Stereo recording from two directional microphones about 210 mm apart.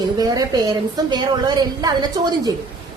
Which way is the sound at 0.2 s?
20° right (ahead or behind).